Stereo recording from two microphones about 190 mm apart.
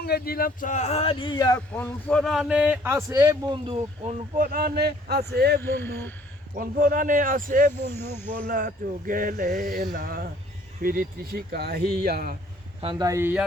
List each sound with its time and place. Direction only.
0.0 s speech: 55° left (ahead or behind); by 1.5 s 20° left (ahead or behind)
1.5 s a man's voice: 5° left (ahead or behind); by 4.4 s 35° right (ahead or behind)
4.5 s a man's voice: 55° right (ahead or behind)
5.5 s speech: 10° left (ahead or behind)
6.6 s a sound: 45° right (ahead or behind)
12.8 s a man's voice: 25° right (ahead or behind)